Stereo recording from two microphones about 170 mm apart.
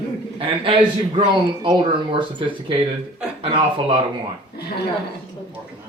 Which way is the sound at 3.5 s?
30° right (ahead or behind).